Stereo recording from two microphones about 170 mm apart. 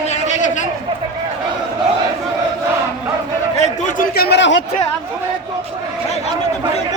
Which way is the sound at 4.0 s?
65° left (ahead or behind).